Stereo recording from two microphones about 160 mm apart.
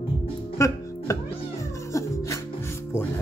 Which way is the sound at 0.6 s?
20° left (ahead or behind).